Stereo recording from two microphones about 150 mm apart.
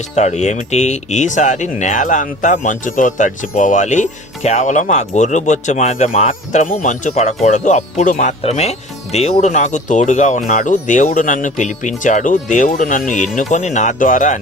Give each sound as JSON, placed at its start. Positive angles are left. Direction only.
{"t": 0.2, "sound": "speech", "side_deg": 50}